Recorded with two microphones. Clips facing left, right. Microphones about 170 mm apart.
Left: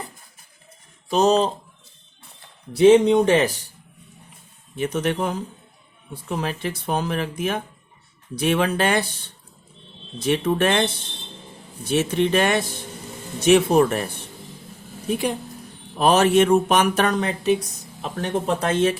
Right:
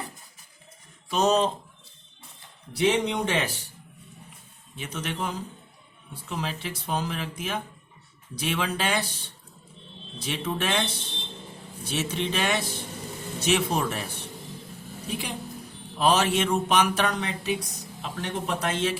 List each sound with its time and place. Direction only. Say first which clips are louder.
1.1 s speech: left 5 dB; 35° left (ahead or behind)
2.8 s speech: left 11 dB; 45° left (ahead or behind)
4.8 s speech: left 9 dB; 50° left (ahead or behind)
10.2 s speech: left 9 dB; 55° left (ahead or behind)
11.9 s speech: left 9 dB; 55° left (ahead or behind)
16.0 s speech: left 7 dB; 55° left (ahead or behind)